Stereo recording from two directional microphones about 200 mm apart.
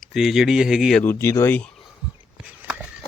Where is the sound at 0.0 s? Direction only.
Centre (ahead or behind).